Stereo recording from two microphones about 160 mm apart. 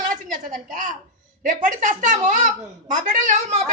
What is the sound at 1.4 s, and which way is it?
Speech, 55° right (ahead or behind).